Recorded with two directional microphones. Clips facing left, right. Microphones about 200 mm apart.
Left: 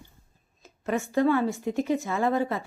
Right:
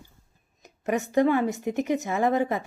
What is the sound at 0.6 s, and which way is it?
A woman's voice, 15° right (ahead or behind).